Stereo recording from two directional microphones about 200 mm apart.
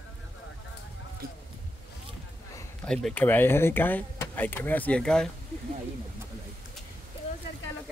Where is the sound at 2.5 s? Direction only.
5° left (ahead or behind).